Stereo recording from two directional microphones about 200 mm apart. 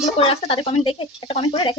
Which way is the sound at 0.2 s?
30° left (ahead or behind).